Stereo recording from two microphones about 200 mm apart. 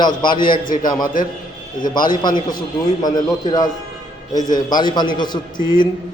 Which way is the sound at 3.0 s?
20° left (ahead or behind).